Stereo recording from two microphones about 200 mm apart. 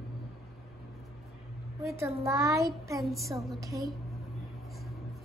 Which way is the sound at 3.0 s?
Centre (ahead or behind).